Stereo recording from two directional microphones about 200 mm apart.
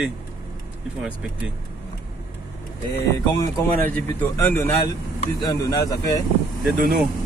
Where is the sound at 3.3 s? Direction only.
10° left (ahead or behind).